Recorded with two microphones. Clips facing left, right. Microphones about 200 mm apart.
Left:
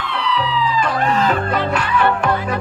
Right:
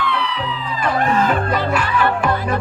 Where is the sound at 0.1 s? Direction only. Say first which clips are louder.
Left 2 dB; 55° right (ahead or behind).